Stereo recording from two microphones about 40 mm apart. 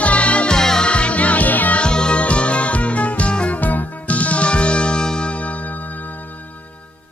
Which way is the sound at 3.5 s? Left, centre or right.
Left.